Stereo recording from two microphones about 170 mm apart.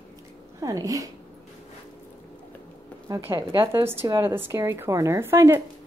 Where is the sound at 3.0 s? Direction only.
20° right (ahead or behind).